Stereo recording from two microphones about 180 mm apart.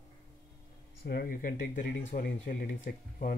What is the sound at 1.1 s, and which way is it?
Speech, 55° left (ahead or behind).